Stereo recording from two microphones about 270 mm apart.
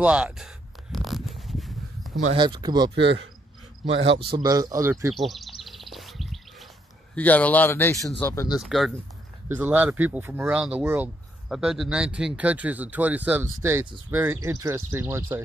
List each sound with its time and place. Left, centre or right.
0.0 s speech: centre
0.9 s a sound: centre
2.3 s speech: centre
3.8 s a man's voice: right
4.2 s speech: centre
5.1 s bird: centre
7.2 s speech: centre